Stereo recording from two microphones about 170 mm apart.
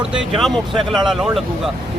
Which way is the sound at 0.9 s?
Centre (ahead or behind).